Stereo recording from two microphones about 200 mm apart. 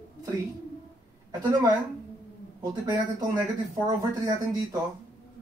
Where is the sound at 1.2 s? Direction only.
20° right (ahead or behind).